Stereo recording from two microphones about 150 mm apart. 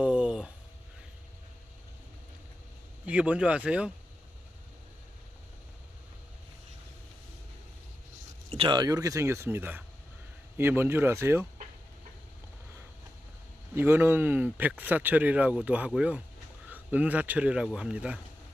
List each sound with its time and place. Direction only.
0.0 s a sound: 5° right (ahead or behind)
3.1 s speech: 10° right (ahead or behind)
8.4 s speech: 35° right (ahead or behind); by 11.4 s 15° right (ahead or behind)
13.7 s speech: 15° right (ahead or behind)